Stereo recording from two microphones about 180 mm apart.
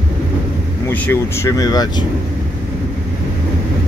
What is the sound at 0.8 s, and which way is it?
Speech, 10° left (ahead or behind).